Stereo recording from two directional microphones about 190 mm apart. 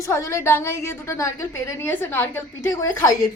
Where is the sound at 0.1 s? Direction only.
15° left (ahead or behind).